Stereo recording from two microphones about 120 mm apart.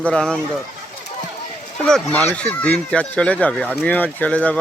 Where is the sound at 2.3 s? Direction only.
10° left (ahead or behind).